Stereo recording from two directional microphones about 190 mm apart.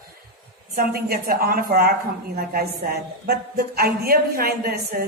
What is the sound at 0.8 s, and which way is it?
A woman's voice, 50° right (ahead or behind).